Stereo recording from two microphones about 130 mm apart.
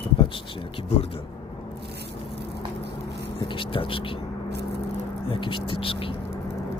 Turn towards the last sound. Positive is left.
turn(degrees=45)  # may be behind; listen again after turning